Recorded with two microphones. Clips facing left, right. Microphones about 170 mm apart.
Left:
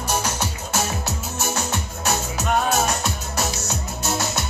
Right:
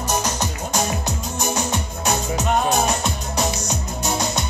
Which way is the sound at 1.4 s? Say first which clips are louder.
Right 3 dB; 15° right (ahead or behind).